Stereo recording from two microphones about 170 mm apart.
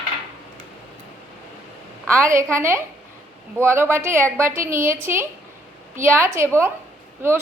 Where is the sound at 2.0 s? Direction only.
15° right (ahead or behind).